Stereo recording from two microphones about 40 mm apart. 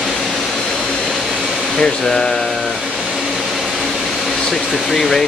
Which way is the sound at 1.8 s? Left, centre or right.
Centre.